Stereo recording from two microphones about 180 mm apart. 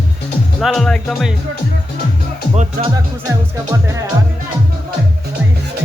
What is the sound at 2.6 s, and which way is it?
Speech, 40° right (ahead or behind).